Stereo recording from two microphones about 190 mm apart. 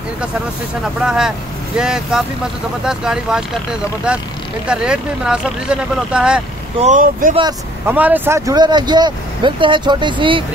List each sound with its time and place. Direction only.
1.0 s speech: 5° right (ahead or behind)
4.6 s speech: 5° right (ahead or behind)
6.8 s speech: 45° right (ahead or behind)
7.8 s speech: 10° right (ahead or behind); by 10.4 s 25° right (ahead or behind)